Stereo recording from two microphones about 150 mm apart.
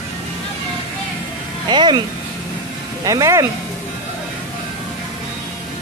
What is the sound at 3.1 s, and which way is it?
Speech, 20° right (ahead or behind).